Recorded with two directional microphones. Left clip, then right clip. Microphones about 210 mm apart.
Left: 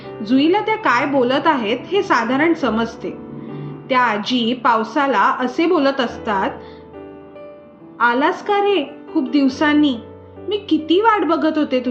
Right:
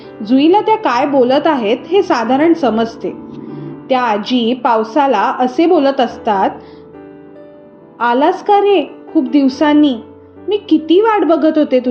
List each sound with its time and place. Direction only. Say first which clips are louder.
0.3 s a woman's voice: right 6 dB; 10° right (ahead or behind)
7.9 s a woman's voice: right 4 dB; 10° right (ahead or behind)